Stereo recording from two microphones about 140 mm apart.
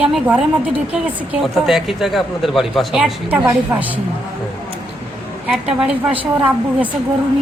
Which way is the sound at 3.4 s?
15° right (ahead or behind).